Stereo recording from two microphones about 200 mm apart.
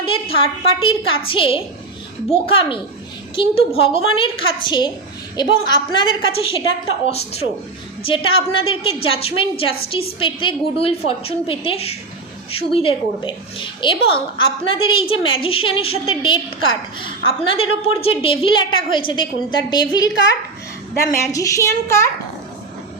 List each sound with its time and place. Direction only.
0.0 s a woman's voice: 25° left (ahead or behind)
21.3 s a child's voice: 15° left (ahead or behind)